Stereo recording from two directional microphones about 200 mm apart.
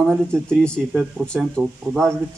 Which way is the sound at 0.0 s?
5° left (ahead or behind).